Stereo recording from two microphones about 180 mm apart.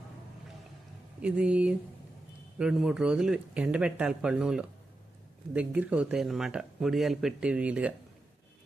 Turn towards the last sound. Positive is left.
turn(degrees=-5)  # may be behind; listen again after turning